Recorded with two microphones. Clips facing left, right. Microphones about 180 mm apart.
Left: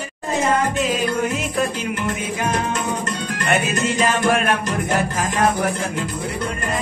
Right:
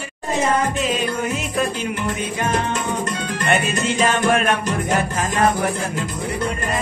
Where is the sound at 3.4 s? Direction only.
Centre (ahead or behind).